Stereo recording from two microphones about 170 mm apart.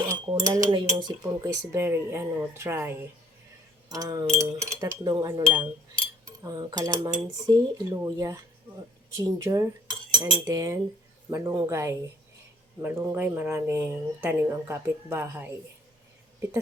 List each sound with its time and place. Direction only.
0.3 s speech: 25° right (ahead or behind)
6.2 s cutlery: 20° right (ahead or behind)
7.4 s speech: 20° right (ahead or behind)